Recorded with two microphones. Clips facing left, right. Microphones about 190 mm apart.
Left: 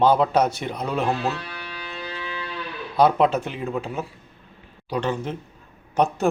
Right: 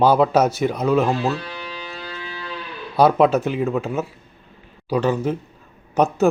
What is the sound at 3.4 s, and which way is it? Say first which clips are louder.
Speech: right 6 dB; 30° left (ahead or behind).